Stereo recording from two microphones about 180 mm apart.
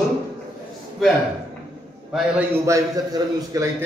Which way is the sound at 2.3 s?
15° right (ahead or behind).